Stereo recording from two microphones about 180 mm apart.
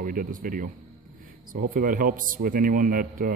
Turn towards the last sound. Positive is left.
turn(degrees=-50)  # may be behind; listen again after turning